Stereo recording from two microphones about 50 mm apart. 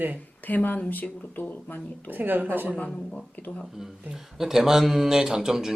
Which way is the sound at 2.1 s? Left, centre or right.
Right.